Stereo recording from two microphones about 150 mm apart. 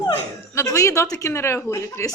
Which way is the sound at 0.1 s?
20° left (ahead or behind).